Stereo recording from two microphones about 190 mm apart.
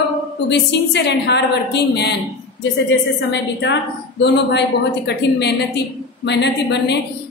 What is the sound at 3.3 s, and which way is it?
A woman's voice, 65° left (ahead or behind).